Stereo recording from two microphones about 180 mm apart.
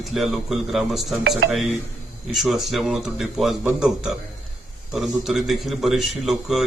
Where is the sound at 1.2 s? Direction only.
70° right (ahead or behind).